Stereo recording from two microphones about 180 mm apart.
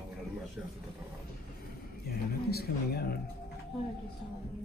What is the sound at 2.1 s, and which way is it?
Speech, 60° left (ahead or behind).